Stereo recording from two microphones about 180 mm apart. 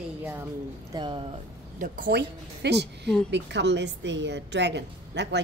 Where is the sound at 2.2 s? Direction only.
70° right (ahead or behind).